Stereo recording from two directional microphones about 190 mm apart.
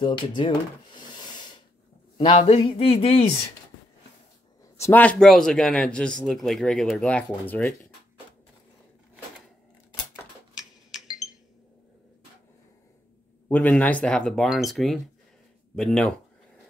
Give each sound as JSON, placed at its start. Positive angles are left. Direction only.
{"t": 0.0, "sound": "speech", "side_deg": 25}
{"t": 4.7, "sound": "speech", "side_deg": 10}
{"t": 10.9, "sound": "chink", "side_deg": 0}
{"t": 13.5, "sound": "speech", "side_deg": 10}